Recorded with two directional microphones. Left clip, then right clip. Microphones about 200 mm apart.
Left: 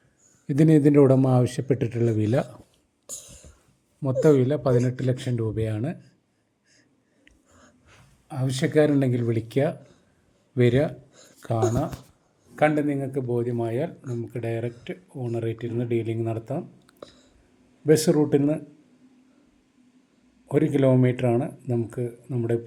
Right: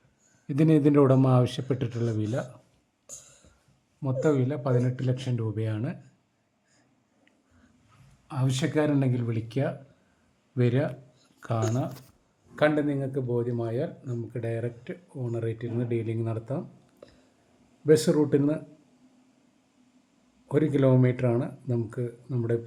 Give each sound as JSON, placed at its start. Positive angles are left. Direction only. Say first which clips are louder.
{"t": 0.4, "sound": "speech", "louder": "left 4 dB", "side_deg": 15}
{"t": 3.1, "sound": "a sound", "louder": "left 6 dB", "side_deg": 30}
{"t": 4.0, "sound": "speech", "louder": "left 6 dB", "side_deg": 20}
{"t": 8.3, "sound": "speech", "louder": "left 4 dB", "side_deg": 10}
{"t": 17.0, "sound": "whispering", "louder": "left 7 dB", "side_deg": 40}
{"t": 17.8, "sound": "speech", "louder": "left 2 dB", "side_deg": 5}
{"t": 20.5, "sound": "speech", "louder": "left 3 dB", "side_deg": 5}